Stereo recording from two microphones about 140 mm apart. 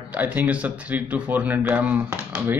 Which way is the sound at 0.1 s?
10° right (ahead or behind).